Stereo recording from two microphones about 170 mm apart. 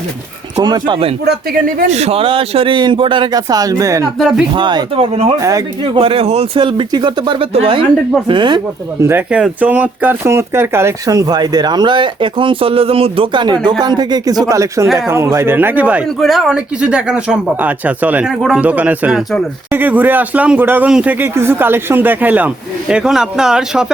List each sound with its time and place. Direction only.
0.5 s speech: 25° right (ahead or behind)
1.2 s speech: 70° right (ahead or behind)
1.9 s speech: 40° right (ahead or behind); by 4.0 s 20° right (ahead or behind)
4.2 s speech: centre (ahead or behind)
4.5 s speech: 25° right (ahead or behind)
9.0 s speech: 10° right (ahead or behind)